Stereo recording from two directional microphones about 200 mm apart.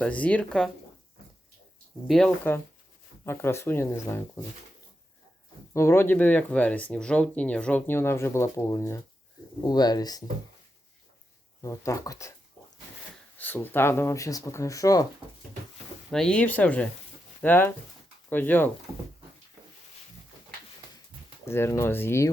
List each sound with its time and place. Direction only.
0.0 s speech: 5° left (ahead or behind)
2.0 s speech: 5° left (ahead or behind)
5.7 s speech: 15° left (ahead or behind)
11.6 s speech: 15° left (ahead or behind)
13.4 s speech: 10° left (ahead or behind)
16.0 s speech: centre (ahead or behind)
21.4 s speech: 10° left (ahead or behind)